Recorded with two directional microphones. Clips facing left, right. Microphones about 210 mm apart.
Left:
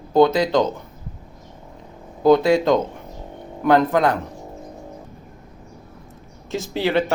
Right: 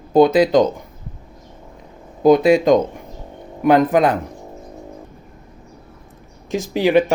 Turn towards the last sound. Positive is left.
turn(degrees=-15)  # may be behind; listen again after turning